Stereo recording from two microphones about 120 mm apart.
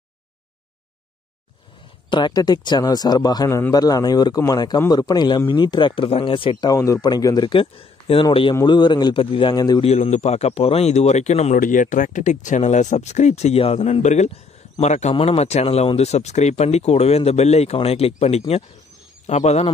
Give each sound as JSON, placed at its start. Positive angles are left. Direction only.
{"t": 2.0, "sound": "speech", "side_deg": 40}
{"t": 6.7, "sound": "speech", "side_deg": 30}
{"t": 9.8, "sound": "speech", "side_deg": 60}
{"t": 15.1, "sound": "speech", "side_deg": 55}